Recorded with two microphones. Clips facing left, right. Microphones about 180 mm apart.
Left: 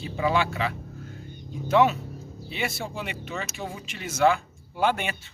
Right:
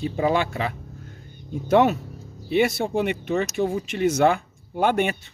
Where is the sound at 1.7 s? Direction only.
50° right (ahead or behind).